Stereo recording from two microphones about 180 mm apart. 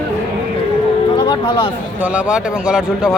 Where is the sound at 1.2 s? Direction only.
25° left (ahead or behind).